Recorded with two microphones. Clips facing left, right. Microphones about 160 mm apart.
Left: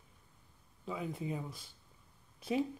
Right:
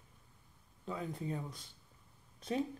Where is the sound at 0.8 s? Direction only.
5° left (ahead or behind).